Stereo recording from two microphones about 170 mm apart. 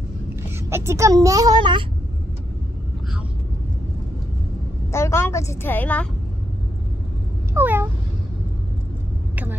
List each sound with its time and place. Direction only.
0.7 s speech: 15° right (ahead or behind)
4.9 s a woman's voice: 15° left (ahead or behind)
7.5 s cat: 10° right (ahead or behind)
9.3 s vehicle: 10° right (ahead or behind)